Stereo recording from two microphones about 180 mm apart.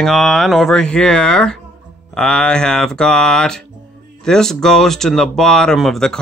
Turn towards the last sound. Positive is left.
turn(degrees=0)  # may be behind; listen again after turning